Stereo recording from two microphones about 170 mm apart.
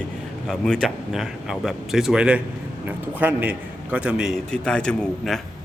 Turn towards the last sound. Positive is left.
turn(degrees=5)  # may be behind; listen again after turning